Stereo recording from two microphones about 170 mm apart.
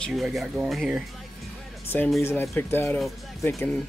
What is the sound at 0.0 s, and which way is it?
Speech, centre (ahead or behind).